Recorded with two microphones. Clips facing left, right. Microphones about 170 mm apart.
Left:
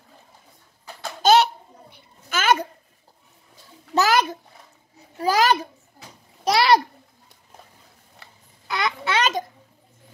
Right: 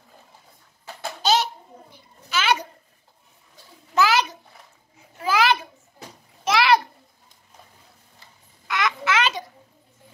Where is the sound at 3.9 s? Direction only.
45° left (ahead or behind).